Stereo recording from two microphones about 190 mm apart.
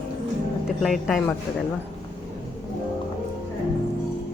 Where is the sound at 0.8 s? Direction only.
Centre (ahead or behind).